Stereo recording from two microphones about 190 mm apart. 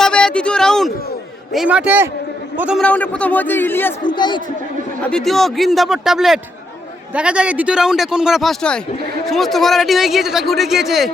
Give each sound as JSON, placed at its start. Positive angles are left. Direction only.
{"t": 0.0, "sound": "a sound", "side_deg": 5}
{"t": 1.5, "sound": "a man's voice", "side_deg": -5}
{"t": 2.8, "sound": "a man's voice", "side_deg": 5}
{"t": 4.0, "sound": "speech", "side_deg": 25}
{"t": 5.0, "sound": "speech", "side_deg": 5}